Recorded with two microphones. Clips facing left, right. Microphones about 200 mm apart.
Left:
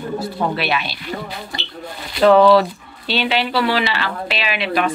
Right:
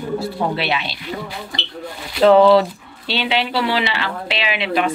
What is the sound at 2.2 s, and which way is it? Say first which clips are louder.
Speech: even; 20° right (ahead or behind).